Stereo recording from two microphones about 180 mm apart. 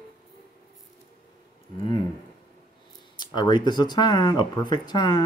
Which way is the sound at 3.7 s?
25° left (ahead or behind).